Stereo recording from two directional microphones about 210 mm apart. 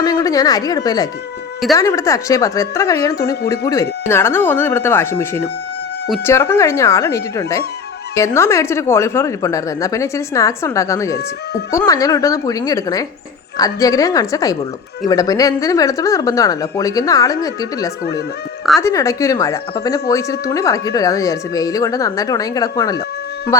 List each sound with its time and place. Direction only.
0.0 s a woman's voice: 15° left (ahead or behind)